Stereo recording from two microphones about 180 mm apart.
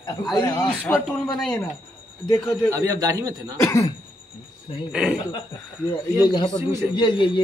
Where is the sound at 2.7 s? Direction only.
20° right (ahead or behind).